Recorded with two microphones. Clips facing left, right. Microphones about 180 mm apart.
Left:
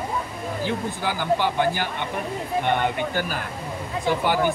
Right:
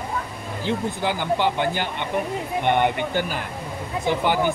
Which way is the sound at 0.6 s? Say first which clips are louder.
Right 4 dB; 20° right (ahead or behind).